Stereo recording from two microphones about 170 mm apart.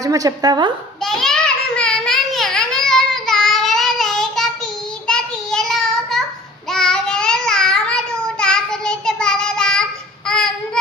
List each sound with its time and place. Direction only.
0.0 s a woman's voice: 20° right (ahead or behind)
1.0 s a sound: centre (ahead or behind)
6.7 s child singing: centre (ahead or behind)